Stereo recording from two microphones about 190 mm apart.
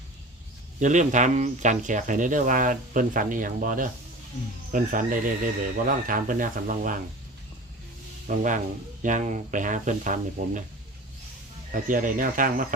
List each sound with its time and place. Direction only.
0.8 s speech: 40° right (ahead or behind)
8.3 s speech: 40° right (ahead or behind)
11.7 s speech: 45° right (ahead or behind)